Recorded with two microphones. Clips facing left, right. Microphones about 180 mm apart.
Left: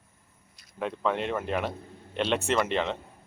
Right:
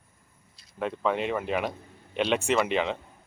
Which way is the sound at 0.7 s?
Centre (ahead or behind).